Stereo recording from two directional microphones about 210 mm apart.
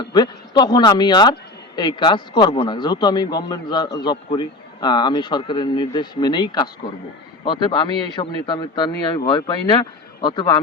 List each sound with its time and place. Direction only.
0.0 s speech: 20° left (ahead or behind)